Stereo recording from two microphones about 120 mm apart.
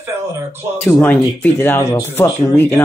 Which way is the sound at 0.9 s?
15° left (ahead or behind).